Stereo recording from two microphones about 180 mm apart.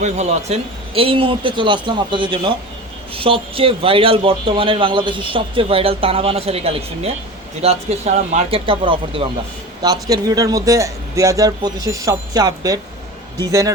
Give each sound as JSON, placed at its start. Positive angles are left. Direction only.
{"t": 0.0, "sound": "speech", "side_deg": -40}